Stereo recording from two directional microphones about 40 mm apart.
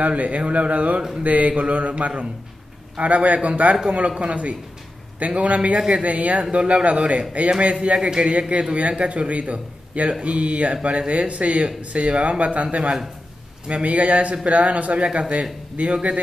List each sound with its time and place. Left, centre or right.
0.0 s speech: right
13.7 s speech: right